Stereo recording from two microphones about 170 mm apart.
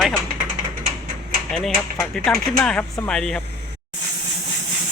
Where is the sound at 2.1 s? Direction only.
5° left (ahead or behind).